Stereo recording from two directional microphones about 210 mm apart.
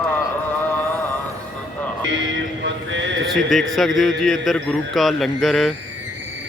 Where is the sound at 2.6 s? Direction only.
60° right (ahead or behind).